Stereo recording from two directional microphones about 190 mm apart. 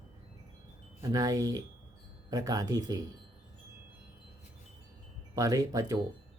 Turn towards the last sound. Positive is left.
turn(degrees=-20)  # may be behind; listen again after turning